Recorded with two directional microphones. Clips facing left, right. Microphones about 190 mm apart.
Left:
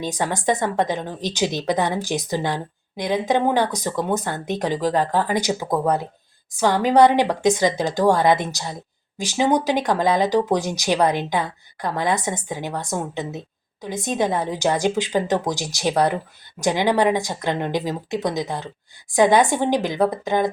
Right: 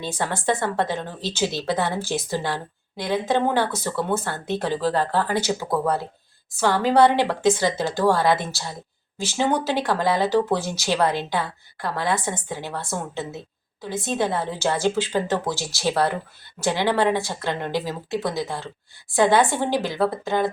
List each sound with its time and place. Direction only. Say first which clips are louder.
0.0 s a woman's voice: left 2 dB; 15° left (ahead or behind)